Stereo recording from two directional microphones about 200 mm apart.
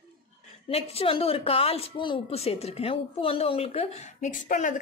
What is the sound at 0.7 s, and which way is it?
Speech, 30° left (ahead or behind).